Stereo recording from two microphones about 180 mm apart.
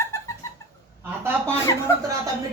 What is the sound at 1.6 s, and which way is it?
Speech, 20° left (ahead or behind).